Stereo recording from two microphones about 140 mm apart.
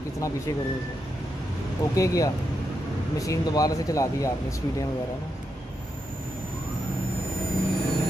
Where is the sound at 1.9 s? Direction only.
25° left (ahead or behind).